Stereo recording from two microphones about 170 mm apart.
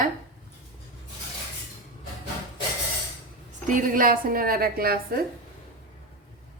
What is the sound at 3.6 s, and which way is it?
Speech, 50° right (ahead or behind).